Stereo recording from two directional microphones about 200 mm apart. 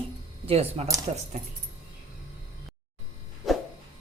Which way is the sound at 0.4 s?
30° right (ahead or behind).